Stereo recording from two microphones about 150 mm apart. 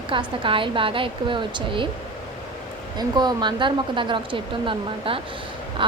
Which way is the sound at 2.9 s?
30° right (ahead or behind).